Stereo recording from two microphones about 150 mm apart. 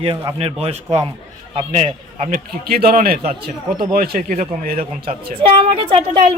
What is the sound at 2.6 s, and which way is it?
A man's voice, 85° right.